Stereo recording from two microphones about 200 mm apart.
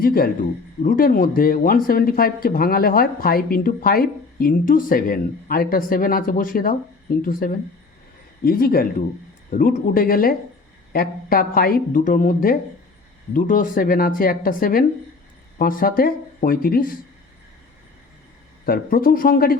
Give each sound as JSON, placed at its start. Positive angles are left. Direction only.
{"t": 0.0, "sound": "speech", "side_deg": 50}
{"t": 18.6, "sound": "speech", "side_deg": 45}